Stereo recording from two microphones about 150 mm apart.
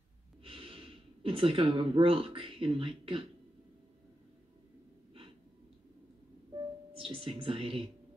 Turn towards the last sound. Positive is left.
turn(degrees=-40)  # may be behind; listen again after turning